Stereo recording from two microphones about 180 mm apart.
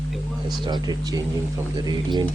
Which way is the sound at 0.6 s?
20° right (ahead or behind).